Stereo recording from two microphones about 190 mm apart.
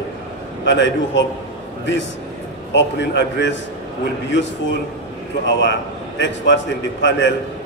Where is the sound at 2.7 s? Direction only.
65° left (ahead or behind).